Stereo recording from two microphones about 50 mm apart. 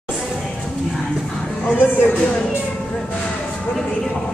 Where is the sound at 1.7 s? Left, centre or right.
Left.